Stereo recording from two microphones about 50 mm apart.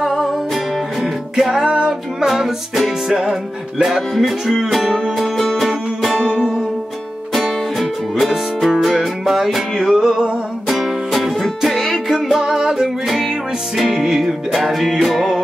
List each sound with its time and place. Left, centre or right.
0.0 s music: centre
1.3 s music: centre